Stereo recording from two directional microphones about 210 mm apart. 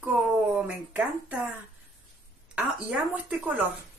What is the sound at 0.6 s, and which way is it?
Speech, 5° right (ahead or behind).